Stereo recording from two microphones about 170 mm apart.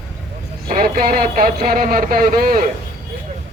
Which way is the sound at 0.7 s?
60° right (ahead or behind).